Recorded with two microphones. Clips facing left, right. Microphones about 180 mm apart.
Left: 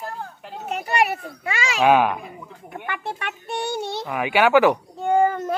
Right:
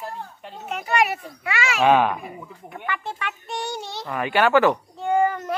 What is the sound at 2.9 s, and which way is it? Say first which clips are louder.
A child's voice: even; 60° left (ahead or behind).